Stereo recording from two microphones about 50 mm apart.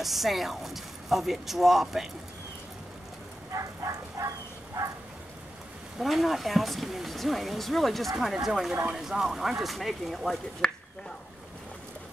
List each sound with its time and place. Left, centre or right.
0.0 s speech: centre
3.5 s a sound: right
5.9 s speech: centre
10.6 s finger snapping: centre